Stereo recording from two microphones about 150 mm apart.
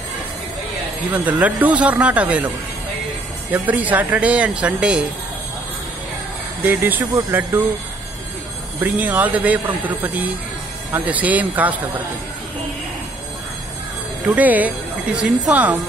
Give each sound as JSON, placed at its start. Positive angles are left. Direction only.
{"t": 1.4, "sound": "speech", "side_deg": -10}
{"t": 3.5, "sound": "speech", "side_deg": -10}
{"t": 6.6, "sound": "speech", "side_deg": -10}
{"t": 8.8, "sound": "speech", "side_deg": -10}
{"t": 14.2, "sound": "speech", "side_deg": -10}